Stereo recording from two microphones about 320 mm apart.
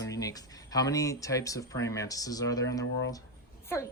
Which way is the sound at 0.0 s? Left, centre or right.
Centre.